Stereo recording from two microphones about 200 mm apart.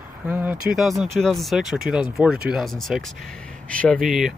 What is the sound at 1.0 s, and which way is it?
Speech, centre (ahead or behind).